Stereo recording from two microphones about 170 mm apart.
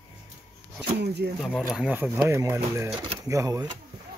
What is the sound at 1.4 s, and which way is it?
Speech, centre (ahead or behind).